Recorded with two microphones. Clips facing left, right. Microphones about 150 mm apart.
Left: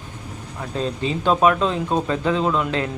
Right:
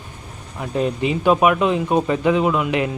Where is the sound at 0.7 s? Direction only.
15° right (ahead or behind).